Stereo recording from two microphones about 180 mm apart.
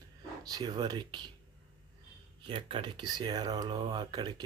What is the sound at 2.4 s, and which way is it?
Speech, 30° right (ahead or behind).